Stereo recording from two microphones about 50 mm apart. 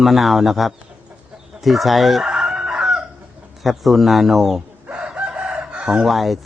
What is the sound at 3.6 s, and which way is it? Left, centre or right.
Speech, centre.